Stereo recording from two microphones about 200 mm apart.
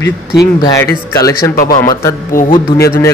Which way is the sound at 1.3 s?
45° left (ahead or behind).